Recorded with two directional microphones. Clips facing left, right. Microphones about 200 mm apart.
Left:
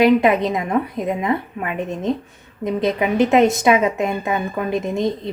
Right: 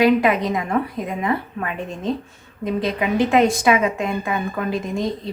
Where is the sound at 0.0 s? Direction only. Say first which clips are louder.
Left 2 dB; 25° left (ahead or behind).